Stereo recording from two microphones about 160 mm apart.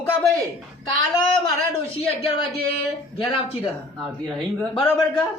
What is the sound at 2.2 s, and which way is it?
Speech, 35° left (ahead or behind).